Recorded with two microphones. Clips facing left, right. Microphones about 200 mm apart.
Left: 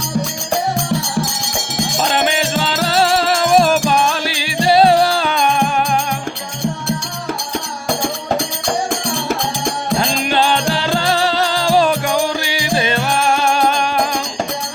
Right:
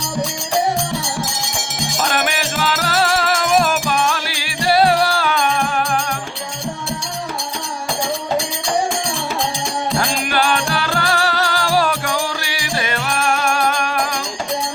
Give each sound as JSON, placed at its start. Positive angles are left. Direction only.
{"t": 2.0, "sound": "music", "side_deg": 25}
{"t": 10.0, "sound": "music", "side_deg": 25}